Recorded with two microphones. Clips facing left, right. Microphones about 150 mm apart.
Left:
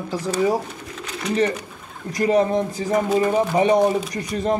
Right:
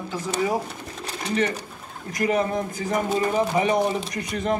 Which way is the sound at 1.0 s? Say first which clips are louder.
Left 4 dB; 35° right (ahead or behind).